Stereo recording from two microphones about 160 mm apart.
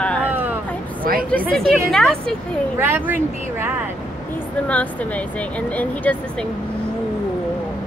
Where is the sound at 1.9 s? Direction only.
5° left (ahead or behind).